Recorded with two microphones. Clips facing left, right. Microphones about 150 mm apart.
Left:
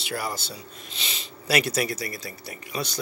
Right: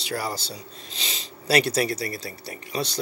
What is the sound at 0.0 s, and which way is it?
Speech, 35° right (ahead or behind).